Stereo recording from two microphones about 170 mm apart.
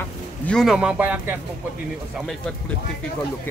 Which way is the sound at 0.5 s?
5° right (ahead or behind).